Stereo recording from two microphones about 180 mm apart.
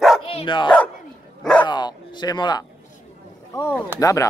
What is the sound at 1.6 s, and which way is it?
Bow-wow, 25° left (ahead or behind).